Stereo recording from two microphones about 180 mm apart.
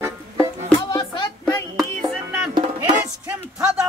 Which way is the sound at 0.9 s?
25° left (ahead or behind).